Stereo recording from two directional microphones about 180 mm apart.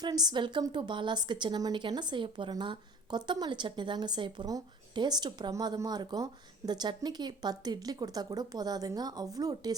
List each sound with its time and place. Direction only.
0.0 s a woman's voice: 20° right (ahead or behind)